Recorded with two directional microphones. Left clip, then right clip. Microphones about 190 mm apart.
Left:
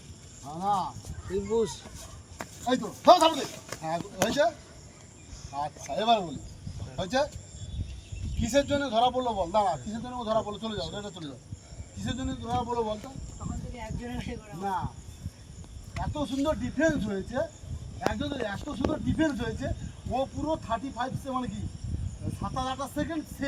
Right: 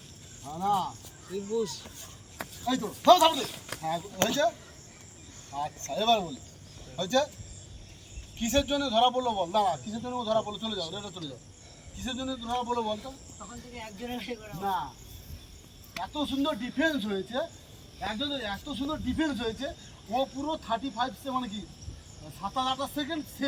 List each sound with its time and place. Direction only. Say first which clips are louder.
0.4 s a man's voice: even; 15° right (ahead or behind)
1.3 s speech: left 4 dB; 40° left (ahead or behind)
2.6 s a man's voice: left 1 dB; 15° right (ahead or behind)
3.3 s speech: even; 5° left (ahead or behind)
3.8 s a man's voice: even; 15° right (ahead or behind)
5.5 s a man's voice: even; 20° right (ahead or behind)
8.4 s a man's voice: left 1 dB; 15° right (ahead or behind)
14.1 s speech: right 6 dB; 5° left (ahead or behind)
16.0 s a man's voice: even; 5° right (ahead or behind)